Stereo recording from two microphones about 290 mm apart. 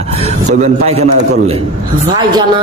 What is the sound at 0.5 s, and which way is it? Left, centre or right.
A man's voice, right.